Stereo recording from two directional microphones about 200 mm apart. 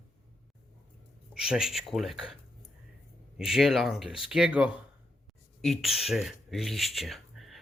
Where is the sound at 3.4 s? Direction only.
Centre (ahead or behind).